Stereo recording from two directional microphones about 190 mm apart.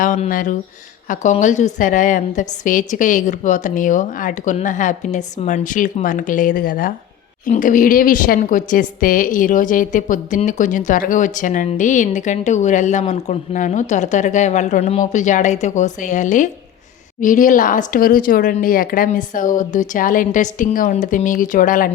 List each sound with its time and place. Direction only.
0.0 s a woman's voice: 45° left (ahead or behind)